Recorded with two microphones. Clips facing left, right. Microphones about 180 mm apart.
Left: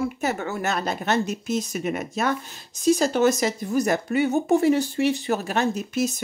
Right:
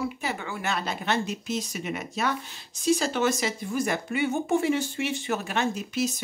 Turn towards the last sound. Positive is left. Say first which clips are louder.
# left 4 dB
turn(degrees=45)  # may be behind; listen again after turning